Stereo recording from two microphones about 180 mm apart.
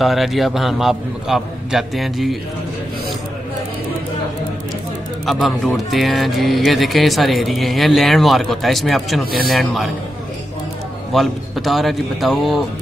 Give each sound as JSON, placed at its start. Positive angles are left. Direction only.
{"t": 0.0, "sound": "speech", "side_deg": 0}
{"t": 5.2, "sound": "speech", "side_deg": 0}
{"t": 11.1, "sound": "speech", "side_deg": 0}